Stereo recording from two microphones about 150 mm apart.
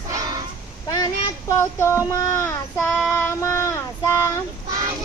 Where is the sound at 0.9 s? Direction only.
20° left (ahead or behind).